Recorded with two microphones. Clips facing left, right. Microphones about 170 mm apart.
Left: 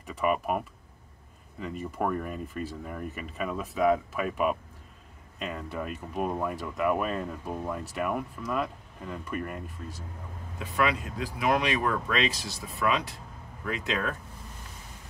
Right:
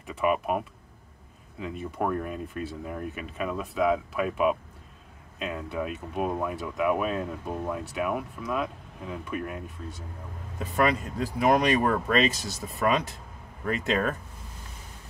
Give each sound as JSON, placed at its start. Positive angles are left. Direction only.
{"t": 0.0, "sound": "speech", "side_deg": 0}
{"t": 10.6, "sound": "speech", "side_deg": -45}